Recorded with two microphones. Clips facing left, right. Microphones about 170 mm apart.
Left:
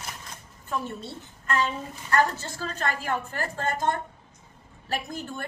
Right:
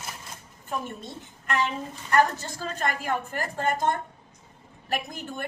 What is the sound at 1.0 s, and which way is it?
A woman's voice, 15° right (ahead or behind).